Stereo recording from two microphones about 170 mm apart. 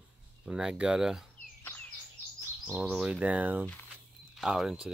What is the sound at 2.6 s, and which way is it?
Speech, 5° right (ahead or behind).